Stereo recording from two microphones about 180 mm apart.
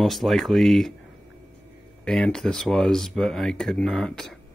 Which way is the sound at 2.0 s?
5° left (ahead or behind).